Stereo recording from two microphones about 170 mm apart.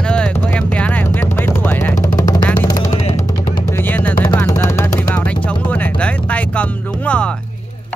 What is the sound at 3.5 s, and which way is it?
Music, 15° left (ahead or behind).